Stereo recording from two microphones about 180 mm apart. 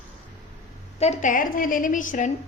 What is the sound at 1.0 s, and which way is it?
A woman's voice, 40° left (ahead or behind).